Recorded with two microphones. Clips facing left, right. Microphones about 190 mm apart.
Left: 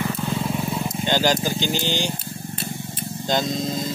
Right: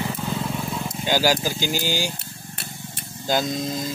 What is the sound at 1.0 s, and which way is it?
Speech, 5° right (ahead or behind).